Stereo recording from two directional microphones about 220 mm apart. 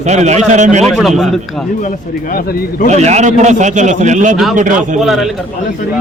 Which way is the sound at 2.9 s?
30° right (ahead or behind).